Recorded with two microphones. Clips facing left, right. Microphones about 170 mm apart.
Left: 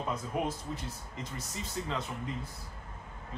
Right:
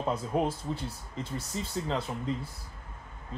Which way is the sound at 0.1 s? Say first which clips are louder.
Right 5 dB; 30° right (ahead or behind).